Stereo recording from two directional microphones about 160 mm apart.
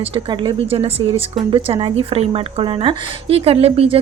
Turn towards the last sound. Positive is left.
turn(degrees=-40)  # may be behind; listen again after turning